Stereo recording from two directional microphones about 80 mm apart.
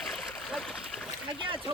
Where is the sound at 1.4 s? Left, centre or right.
Right.